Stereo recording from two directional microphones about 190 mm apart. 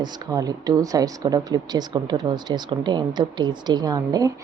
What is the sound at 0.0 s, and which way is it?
A woman's voice, 20° right (ahead or behind).